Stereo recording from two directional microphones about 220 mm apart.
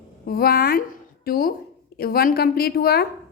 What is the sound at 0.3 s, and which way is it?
A woman's voice, 45° left (ahead or behind).